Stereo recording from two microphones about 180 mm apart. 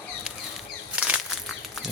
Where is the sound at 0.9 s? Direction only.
5° right (ahead or behind).